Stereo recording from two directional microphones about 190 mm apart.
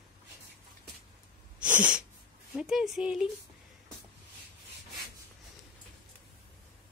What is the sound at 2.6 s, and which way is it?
Speech, 5° right (ahead or behind).